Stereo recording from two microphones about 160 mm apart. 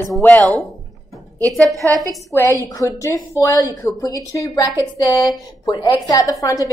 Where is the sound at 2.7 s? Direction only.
20° left (ahead or behind).